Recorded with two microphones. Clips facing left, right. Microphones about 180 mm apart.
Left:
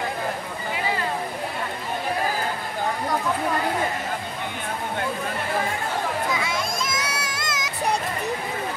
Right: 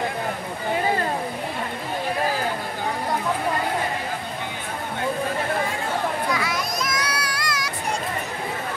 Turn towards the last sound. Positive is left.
turn(degrees=20)  # may be behind; listen again after turning